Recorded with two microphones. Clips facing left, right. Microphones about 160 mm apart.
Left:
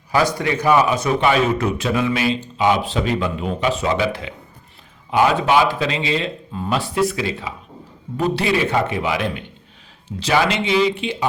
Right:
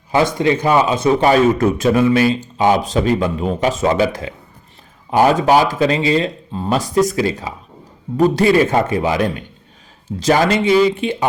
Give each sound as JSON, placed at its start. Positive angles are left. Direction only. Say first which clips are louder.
{"t": 0.1, "sound": "a man's voice", "louder": "right 4 dB", "side_deg": -25}
{"t": 1.2, "sound": "speech", "louder": "right 5 dB", "side_deg": -45}